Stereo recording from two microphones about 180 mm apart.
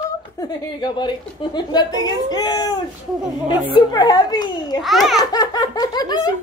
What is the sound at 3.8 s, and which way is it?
A woman's voice, 25° left (ahead or behind).